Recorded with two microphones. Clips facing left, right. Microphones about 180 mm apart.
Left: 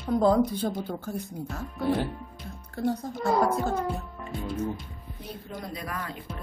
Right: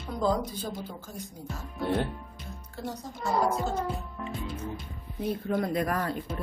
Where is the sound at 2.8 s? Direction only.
55° left (ahead or behind).